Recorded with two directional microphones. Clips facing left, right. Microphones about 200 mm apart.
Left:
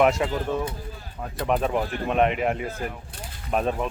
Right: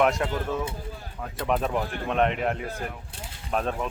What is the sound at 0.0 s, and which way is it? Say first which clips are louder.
Speech: left 3 dB; centre (ahead or behind).